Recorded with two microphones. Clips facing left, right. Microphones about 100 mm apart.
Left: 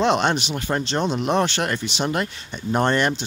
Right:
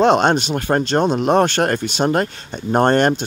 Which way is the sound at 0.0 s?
45° right (ahead or behind).